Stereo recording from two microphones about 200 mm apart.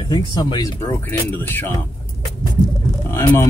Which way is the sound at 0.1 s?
20° left (ahead or behind).